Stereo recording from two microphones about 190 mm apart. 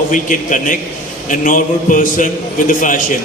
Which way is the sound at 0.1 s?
45° left (ahead or behind).